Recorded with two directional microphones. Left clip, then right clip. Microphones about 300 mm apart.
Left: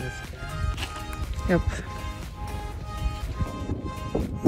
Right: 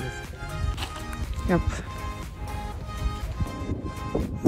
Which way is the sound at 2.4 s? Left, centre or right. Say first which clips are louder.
Left 1 dB; centre.